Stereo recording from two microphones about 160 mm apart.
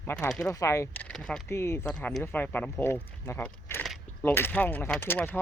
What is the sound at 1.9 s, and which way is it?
Speech, 5° left (ahead or behind).